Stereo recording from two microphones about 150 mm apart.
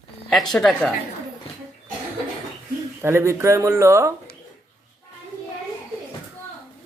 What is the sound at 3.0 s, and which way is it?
Speech, 15° right (ahead or behind).